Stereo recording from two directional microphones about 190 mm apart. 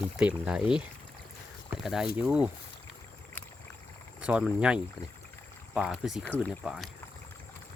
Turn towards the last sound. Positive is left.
turn(degrees=0)  # may be behind; listen again after turning